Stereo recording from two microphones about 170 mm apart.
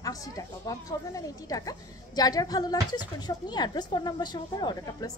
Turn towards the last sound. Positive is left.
turn(degrees=20)  # may be behind; listen again after turning